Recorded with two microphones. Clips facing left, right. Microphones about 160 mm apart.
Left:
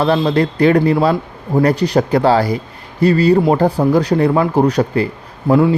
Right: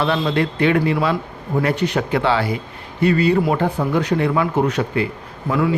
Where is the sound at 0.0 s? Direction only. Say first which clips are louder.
Left 5 dB; 40° left (ahead or behind).